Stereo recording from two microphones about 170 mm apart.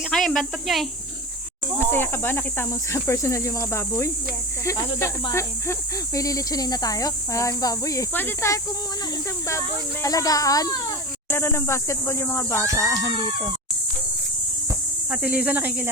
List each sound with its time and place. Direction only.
0.1 s speech: 5° left (ahead or behind)
1.8 s speech: 15° left (ahead or behind)
15.1 s speech: 10° right (ahead or behind)